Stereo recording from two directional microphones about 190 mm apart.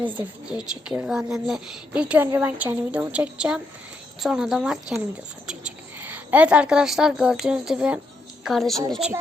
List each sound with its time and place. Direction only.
0.4 s a woman's voice: 5° right (ahead or behind)